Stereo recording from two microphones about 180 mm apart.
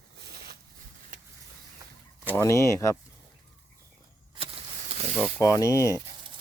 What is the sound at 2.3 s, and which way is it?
Speech, 15° left (ahead or behind).